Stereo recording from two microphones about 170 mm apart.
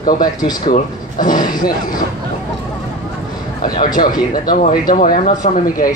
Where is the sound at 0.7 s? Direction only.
50° left (ahead or behind).